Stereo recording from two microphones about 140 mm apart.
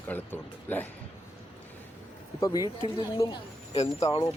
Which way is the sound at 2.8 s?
30° left (ahead or behind).